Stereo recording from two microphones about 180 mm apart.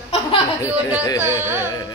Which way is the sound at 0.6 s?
10° right (ahead or behind).